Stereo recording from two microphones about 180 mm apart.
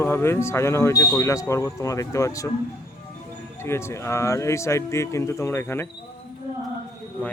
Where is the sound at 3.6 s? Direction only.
15° left (ahead or behind).